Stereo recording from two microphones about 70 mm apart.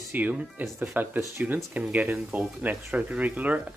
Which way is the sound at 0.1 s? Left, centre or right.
Right.